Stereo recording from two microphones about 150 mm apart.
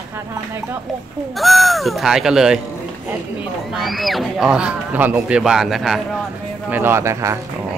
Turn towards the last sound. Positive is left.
turn(degrees=-20)  # may be behind; listen again after turning